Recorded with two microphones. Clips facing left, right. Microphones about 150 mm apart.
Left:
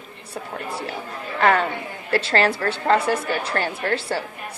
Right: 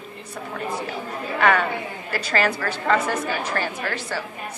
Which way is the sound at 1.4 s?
30° left (ahead or behind).